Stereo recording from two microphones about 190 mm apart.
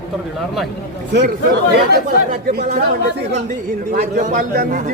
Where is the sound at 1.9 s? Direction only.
50° right (ahead or behind).